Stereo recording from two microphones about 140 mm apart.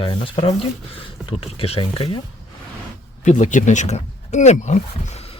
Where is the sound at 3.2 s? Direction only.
60° left (ahead or behind).